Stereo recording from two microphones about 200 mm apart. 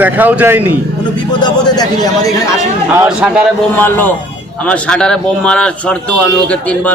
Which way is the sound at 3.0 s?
5° right (ahead or behind).